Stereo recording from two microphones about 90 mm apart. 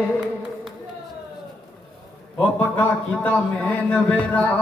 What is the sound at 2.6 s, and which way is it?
Speech, 25° left (ahead or behind).